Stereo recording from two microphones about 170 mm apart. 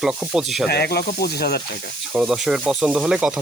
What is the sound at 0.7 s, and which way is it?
Speech, 70° left (ahead or behind).